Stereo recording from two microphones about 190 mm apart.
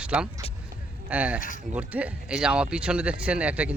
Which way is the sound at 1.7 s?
5° right (ahead or behind).